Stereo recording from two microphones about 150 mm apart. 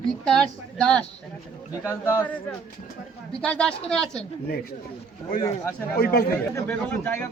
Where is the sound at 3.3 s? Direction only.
5° left (ahead or behind).